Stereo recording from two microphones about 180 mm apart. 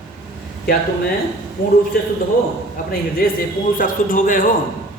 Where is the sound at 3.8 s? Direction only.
45° left (ahead or behind).